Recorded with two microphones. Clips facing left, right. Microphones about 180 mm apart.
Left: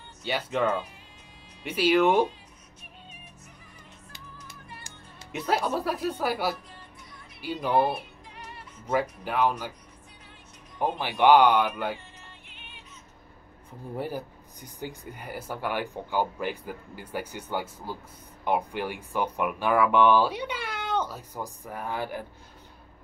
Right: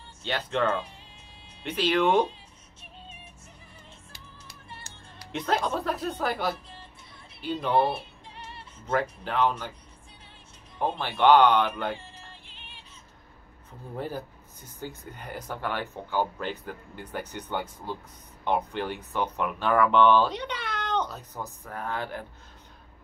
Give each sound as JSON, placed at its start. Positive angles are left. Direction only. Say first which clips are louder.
{"t": 0.2, "sound": "speech", "louder": "left 1 dB", "side_deg": 10}
{"t": 4.4, "sound": "music", "louder": "right 1 dB", "side_deg": -25}
{"t": 5.3, "sound": "speech", "louder": "even", "side_deg": 10}
{"t": 7.8, "sound": "music", "louder": "even", "side_deg": -25}
{"t": 9.2, "sound": "speech", "louder": "even", "side_deg": 10}
{"t": 10.8, "sound": "speech", "louder": "left 1 dB", "side_deg": 10}
{"t": 12.2, "sound": "music", "louder": "right 1 dB", "side_deg": -30}
{"t": 13.9, "sound": "speech", "louder": "left 1 dB", "side_deg": 15}